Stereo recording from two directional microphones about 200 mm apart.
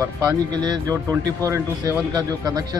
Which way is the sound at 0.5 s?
20° right (ahead or behind).